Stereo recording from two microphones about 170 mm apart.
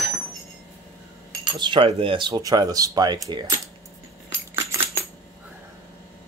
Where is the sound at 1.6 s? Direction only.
30° right (ahead or behind).